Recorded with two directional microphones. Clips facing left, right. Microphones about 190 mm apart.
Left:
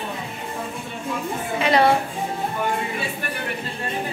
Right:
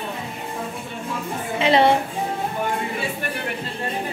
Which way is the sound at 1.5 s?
25° right (ahead or behind).